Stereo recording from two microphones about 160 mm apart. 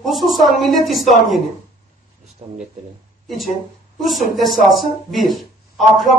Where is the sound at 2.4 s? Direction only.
40° right (ahead or behind).